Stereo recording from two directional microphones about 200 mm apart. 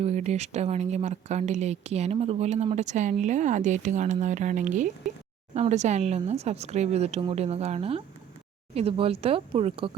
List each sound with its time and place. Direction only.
0.0 s speech: 35° right (ahead or behind)